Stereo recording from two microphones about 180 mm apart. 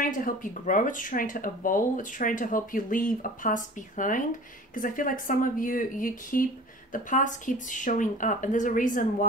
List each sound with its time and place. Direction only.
0.0 s speech: 50° left (ahead or behind)